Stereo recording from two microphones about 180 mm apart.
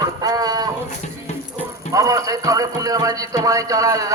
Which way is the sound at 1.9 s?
20° right (ahead or behind).